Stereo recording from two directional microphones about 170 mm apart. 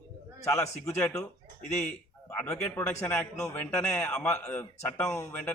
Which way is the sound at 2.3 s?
10° left (ahead or behind).